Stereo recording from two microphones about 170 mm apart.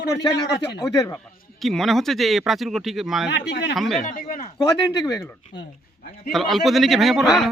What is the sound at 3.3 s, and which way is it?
Speech, 80° left.